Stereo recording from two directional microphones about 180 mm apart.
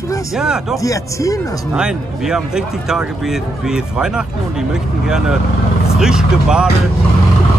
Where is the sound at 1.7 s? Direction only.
5° right (ahead or behind).